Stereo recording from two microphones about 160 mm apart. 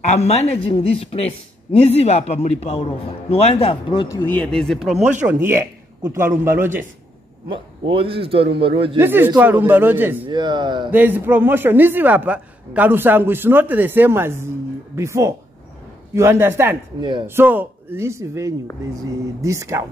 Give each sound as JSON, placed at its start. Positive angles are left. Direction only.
{"t": 0.0, "sound": "speech", "side_deg": 45}
{"t": 4.2, "sound": "speech", "side_deg": 10}
{"t": 5.2, "sound": "speech", "side_deg": -15}
{"t": 7.4, "sound": "a man's voice", "side_deg": -30}
{"t": 8.9, "sound": "speech", "side_deg": -15}
{"t": 10.2, "sound": "speech", "side_deg": -30}
{"t": 10.9, "sound": "speech", "side_deg": -10}
{"t": 17.0, "sound": "a man's voice", "side_deg": -30}
{"t": 17.3, "sound": "speech", "side_deg": -10}